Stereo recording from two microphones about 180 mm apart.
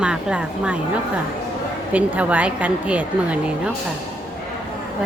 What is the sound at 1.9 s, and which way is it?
A woman's voice, 10° right (ahead or behind).